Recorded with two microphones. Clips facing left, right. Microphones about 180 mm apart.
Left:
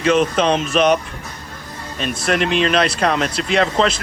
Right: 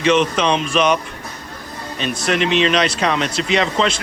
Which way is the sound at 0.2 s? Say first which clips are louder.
Left 1 dB; 45° left (ahead or behind).